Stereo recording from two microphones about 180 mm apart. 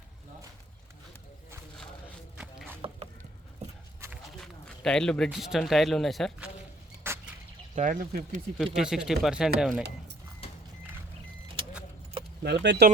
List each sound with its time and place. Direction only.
2.4 s a sound: 5° right (ahead or behind)
4.4 s speech: 5° left (ahead or behind)
7.1 s a sound: 15° right (ahead or behind)
7.8 s speech: 45° right (ahead or behind)
8.5 s speech: centre (ahead or behind)
12.4 s speech: 65° right (ahead or behind)